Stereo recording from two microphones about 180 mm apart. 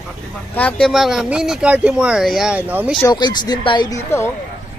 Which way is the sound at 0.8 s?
Centre (ahead or behind).